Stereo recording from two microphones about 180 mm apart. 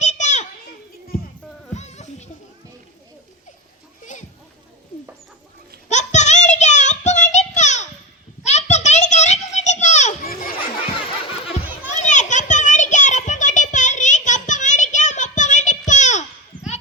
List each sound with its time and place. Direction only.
0.0 s children playing: 40° left (ahead or behind)
1.7 s music: 40° left (ahead or behind)
4.0 s a sound: 45° left (ahead or behind)
5.9 s music: 40° left (ahead or behind)
8.4 s children playing: 40° left (ahead or behind)
12.0 s children playing: 40° left (ahead or behind)
15.9 s a sound: 40° left (ahead or behind)